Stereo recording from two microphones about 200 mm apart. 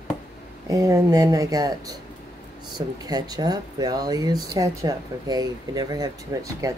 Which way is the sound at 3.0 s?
20° right (ahead or behind).